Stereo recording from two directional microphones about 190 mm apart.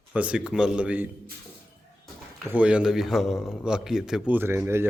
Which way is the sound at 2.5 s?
5° right (ahead or behind).